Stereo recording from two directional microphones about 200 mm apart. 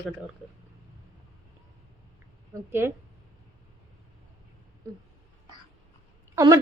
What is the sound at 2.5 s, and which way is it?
Speech, 10° right (ahead or behind).